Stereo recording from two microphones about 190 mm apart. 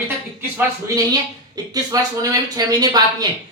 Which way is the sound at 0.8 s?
15° right (ahead or behind).